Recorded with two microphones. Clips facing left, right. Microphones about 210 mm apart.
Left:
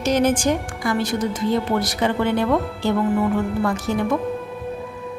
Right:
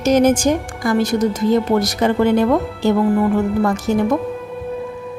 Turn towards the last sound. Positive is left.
turn(degrees=-45)  # may be behind; listen again after turning